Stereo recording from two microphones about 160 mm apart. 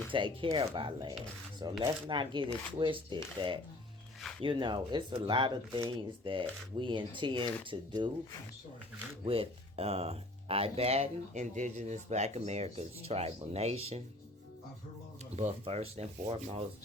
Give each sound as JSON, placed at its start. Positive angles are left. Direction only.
{"t": 0.1, "sound": "speech", "side_deg": -30}
{"t": 4.2, "sound": "music", "side_deg": 0}
{"t": 4.4, "sound": "speech", "side_deg": -30}
{"t": 9.2, "sound": "speech", "side_deg": -35}
{"t": 15.4, "sound": "speech", "side_deg": -45}